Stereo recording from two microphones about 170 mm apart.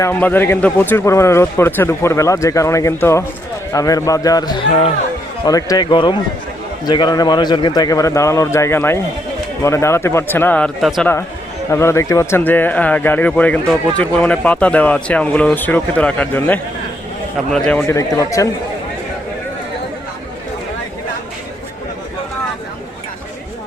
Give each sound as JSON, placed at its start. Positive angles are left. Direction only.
{"t": 0.0, "sound": "a man's voice", "side_deg": 10}
{"t": 11.7, "sound": "speech", "side_deg": 15}
{"t": 17.8, "sound": "a man's voice", "side_deg": 20}